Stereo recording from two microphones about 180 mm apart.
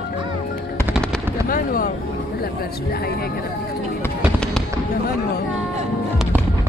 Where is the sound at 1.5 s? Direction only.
50° left (ahead or behind).